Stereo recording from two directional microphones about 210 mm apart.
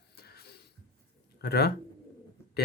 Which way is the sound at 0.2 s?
50° left (ahead or behind).